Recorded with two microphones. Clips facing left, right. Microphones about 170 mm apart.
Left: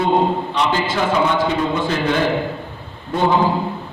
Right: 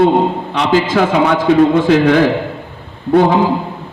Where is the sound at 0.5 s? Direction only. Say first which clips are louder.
Right 9 dB; 85° right.